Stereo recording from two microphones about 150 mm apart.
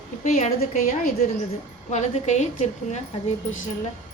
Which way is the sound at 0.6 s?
65° left (ahead or behind).